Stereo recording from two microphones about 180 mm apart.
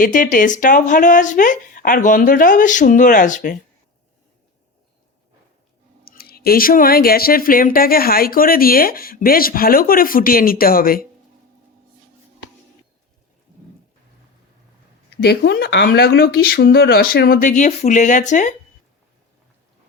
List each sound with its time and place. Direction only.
0.0 s speech: 45° left (ahead or behind)
6.1 s speech: 60° left (ahead or behind)
15.2 s speech: 65° left (ahead or behind); by 18.5 s 45° left (ahead or behind)